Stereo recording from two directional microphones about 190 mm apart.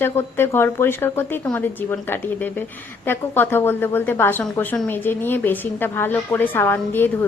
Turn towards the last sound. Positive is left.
turn(degrees=10)  # may be behind; listen again after turning